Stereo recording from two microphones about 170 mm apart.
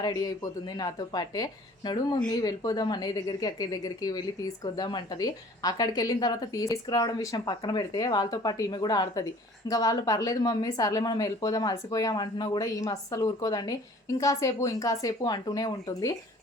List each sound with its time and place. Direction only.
0.0 s a woman's voice: 25° left (ahead or behind)